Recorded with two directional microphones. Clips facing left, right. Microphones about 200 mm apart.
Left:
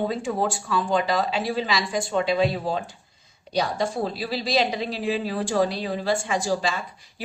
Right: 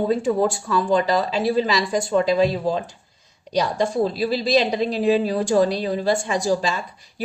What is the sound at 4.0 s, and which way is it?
Speech, 40° right (ahead or behind).